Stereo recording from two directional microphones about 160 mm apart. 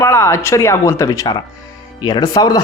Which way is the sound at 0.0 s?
15° left (ahead or behind).